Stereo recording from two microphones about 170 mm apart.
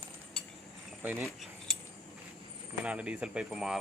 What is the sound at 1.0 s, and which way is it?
Speech, 10° right (ahead or behind).